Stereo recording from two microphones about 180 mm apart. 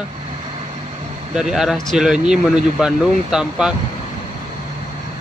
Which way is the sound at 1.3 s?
5° right (ahead or behind).